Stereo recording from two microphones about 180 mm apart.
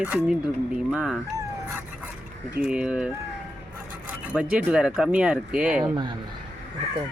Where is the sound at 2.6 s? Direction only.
5° right (ahead or behind).